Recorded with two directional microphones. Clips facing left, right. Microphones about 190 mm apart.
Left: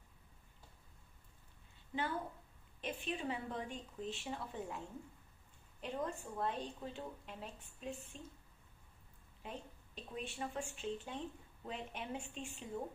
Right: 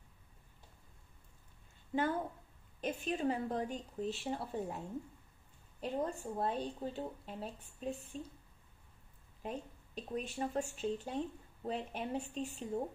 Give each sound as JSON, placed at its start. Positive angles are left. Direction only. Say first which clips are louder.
{"t": 2.8, "sound": "speech", "louder": "right 6 dB", "side_deg": -40}
{"t": 9.4, "sound": "speech", "louder": "right 6 dB", "side_deg": -40}